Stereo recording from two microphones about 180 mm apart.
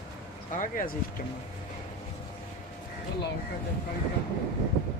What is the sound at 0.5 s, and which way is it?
Speech, 45° left (ahead or behind).